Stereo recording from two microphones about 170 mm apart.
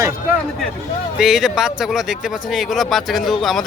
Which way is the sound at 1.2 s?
Centre (ahead or behind).